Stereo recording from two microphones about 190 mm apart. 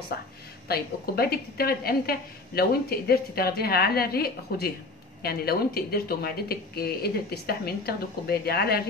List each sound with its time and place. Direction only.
0.7 s a woman's voice: 55° left (ahead or behind)